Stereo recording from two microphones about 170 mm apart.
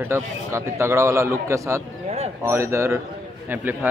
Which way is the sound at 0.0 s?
15° right (ahead or behind).